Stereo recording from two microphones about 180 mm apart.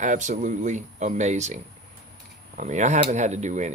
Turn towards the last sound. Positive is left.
turn(degrees=-40)  # may be behind; listen again after turning